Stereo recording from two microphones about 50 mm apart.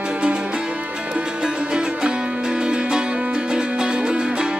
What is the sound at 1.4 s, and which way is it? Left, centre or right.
Music, centre.